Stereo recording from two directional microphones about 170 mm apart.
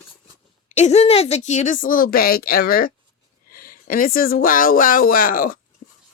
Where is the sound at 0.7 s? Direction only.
40° left (ahead or behind).